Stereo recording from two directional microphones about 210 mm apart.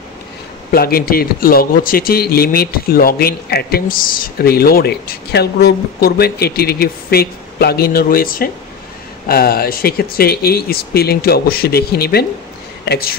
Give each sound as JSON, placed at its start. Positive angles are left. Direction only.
{"t": 0.7, "sound": "a man's voice", "side_deg": 45}